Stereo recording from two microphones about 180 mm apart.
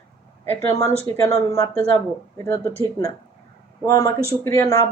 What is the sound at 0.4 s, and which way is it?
Speech, 15° left (ahead or behind).